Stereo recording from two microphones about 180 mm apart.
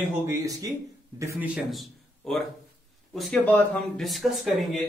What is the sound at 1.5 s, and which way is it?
A man's voice, centre (ahead or behind).